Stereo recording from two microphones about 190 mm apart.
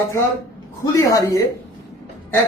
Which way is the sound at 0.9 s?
15° left (ahead or behind).